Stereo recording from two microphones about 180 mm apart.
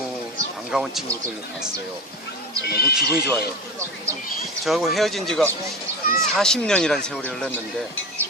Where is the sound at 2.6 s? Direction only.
60° left (ahead or behind).